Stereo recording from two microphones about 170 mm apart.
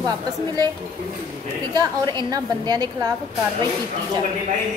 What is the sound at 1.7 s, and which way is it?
A woman's voice, 25° right (ahead or behind).